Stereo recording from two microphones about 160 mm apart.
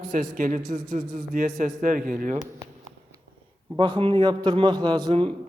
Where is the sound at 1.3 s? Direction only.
55° right (ahead or behind).